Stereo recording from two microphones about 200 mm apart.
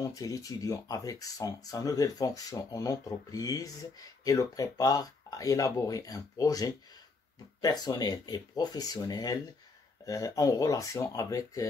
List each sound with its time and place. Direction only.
0.1 s speech: 15° left (ahead or behind)